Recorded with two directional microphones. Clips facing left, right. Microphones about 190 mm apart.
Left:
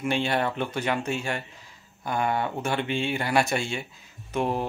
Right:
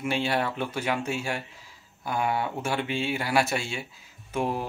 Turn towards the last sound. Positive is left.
turn(degrees=-10)  # may be behind; listen again after turning